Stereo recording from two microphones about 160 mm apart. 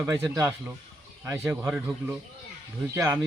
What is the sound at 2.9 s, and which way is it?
Speech, 15° right (ahead or behind).